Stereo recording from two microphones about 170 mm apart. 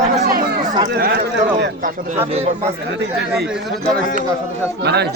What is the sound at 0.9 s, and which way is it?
Speech, 70° right (ahead or behind).